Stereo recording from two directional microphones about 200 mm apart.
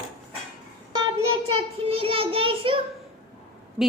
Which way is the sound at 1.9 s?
30° right (ahead or behind).